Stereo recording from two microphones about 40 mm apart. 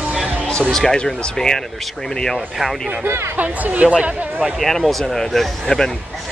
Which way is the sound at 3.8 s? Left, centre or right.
Right.